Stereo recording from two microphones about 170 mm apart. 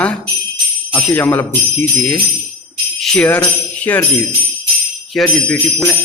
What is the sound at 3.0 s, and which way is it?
Speech, 5° left (ahead or behind).